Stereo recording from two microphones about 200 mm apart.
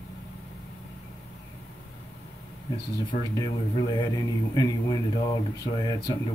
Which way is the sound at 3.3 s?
20° left (ahead or behind).